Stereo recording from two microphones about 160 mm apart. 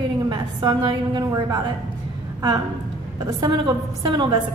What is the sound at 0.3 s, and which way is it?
A woman's voice, 25° right (ahead or behind).